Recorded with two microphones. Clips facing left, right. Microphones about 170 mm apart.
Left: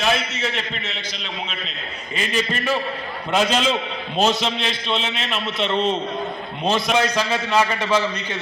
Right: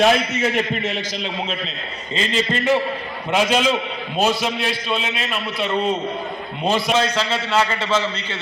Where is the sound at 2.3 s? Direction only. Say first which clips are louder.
Right 4 dB; 20° right (ahead or behind).